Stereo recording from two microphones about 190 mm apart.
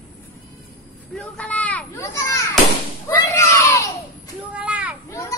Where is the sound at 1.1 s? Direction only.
5° left (ahead or behind).